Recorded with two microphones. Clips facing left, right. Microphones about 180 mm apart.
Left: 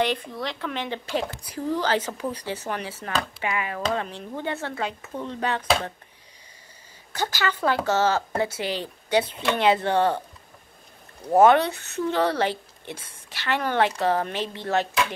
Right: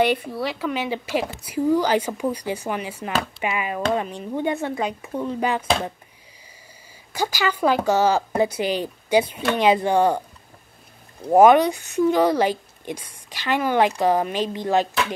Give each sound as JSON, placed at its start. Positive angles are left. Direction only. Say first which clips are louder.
{"t": 0.0, "sound": "speech", "louder": "right 5 dB", "side_deg": -10}
{"t": 7.1, "sound": "speech", "louder": "right 3 dB", "side_deg": -10}
{"t": 11.3, "sound": "speech", "louder": "right 3 dB", "side_deg": -15}